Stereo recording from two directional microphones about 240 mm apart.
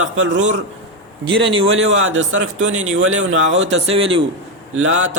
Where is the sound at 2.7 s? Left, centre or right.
Right.